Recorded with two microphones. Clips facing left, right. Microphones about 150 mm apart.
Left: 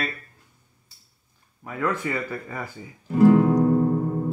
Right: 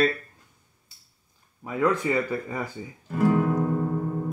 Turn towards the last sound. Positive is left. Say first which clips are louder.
# left 5 dB
turn(degrees=30)  # may be behind; listen again after turning